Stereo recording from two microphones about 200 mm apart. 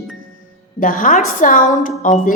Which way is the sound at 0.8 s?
45° left (ahead or behind).